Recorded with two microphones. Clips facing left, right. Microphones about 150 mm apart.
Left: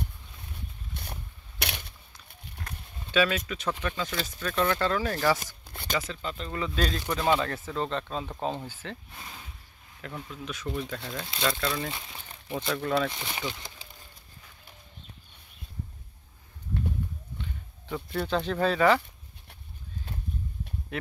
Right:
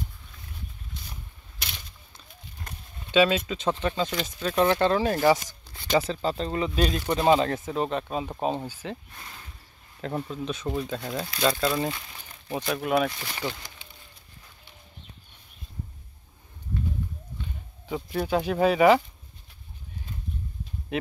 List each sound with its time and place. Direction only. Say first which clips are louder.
0.9 s a sound: left 4 dB; 65° left (ahead or behind)
3.1 s speech: right 5 dB; 20° right (ahead or behind)
6.5 s speech: right 1 dB; 20° right (ahead or behind)
7.1 s speech: right 6 dB; 25° right (ahead or behind)
9.1 s speech: left 1 dB; 10° left (ahead or behind)
10.0 s speech: right 8 dB; 30° right (ahead or behind)
13.1 s speech: left 1 dB; 20° left (ahead or behind)
13.8 s a sound: left 1 dB; 35° left (ahead or behind)
17.8 s speech: right 3 dB; 10° right (ahead or behind)
20.9 s speech: right 6 dB; 20° right (ahead or behind)